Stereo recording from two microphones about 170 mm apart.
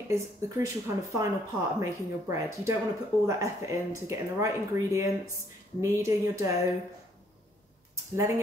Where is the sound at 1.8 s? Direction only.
15° right (ahead or behind).